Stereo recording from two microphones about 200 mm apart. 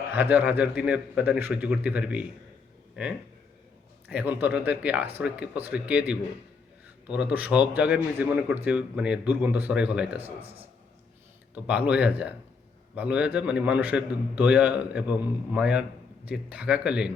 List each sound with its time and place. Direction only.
0.1 s a man's voice: 10° right (ahead or behind)
10.4 s a man's voice: 30° right (ahead or behind)
11.5 s a man's voice: 5° right (ahead or behind)